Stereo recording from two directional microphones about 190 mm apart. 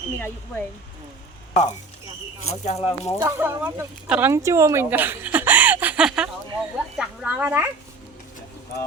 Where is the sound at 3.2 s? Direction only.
15° right (ahead or behind).